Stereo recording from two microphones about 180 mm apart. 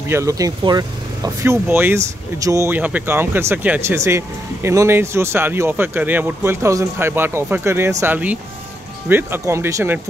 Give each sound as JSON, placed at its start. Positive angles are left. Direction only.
{"t": 0.1, "sound": "speech", "side_deg": -15}